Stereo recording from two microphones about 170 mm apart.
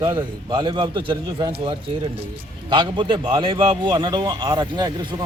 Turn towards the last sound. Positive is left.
turn(degrees=-25)  # may be behind; listen again after turning